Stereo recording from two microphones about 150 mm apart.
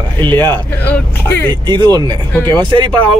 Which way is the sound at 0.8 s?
10° left (ahead or behind).